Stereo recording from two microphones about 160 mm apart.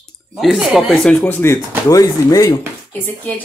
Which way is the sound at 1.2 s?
15° left (ahead or behind).